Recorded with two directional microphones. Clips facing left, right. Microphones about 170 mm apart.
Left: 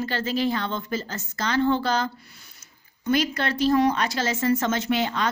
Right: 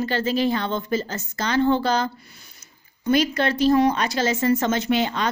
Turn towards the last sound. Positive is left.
turn(degrees=-20)  # may be behind; listen again after turning